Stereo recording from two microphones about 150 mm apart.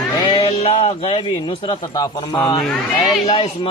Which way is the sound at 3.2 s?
40° left (ahead or behind).